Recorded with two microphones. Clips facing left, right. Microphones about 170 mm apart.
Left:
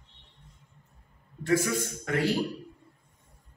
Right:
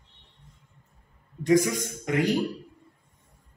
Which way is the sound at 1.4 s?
15° right (ahead or behind).